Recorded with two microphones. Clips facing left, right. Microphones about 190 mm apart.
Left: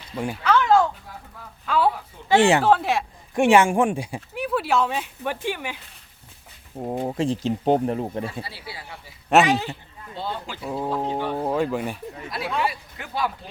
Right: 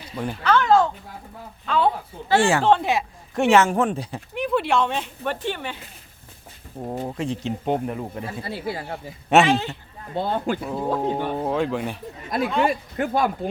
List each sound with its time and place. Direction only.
0.2 s speech: 10° left (ahead or behind)
2.3 s speech: 20° left (ahead or behind)
2.6 s speech: centre (ahead or behind)
3.3 s speech: 15° left (ahead or behind)
6.7 s speech: 10° left (ahead or behind)
7.0 s speech: 25° left (ahead or behind)
8.4 s speech: 50° right (ahead or behind)
9.3 s speech: 5° left (ahead or behind)
10.2 s speech: 55° right (ahead or behind)
10.6 s speech: centre (ahead or behind)
12.6 s speech: 50° right (ahead or behind)